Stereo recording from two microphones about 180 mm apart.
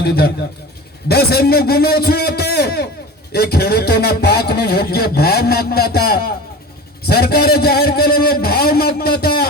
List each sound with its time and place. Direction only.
0.0 s a man's voice: 60° left (ahead or behind)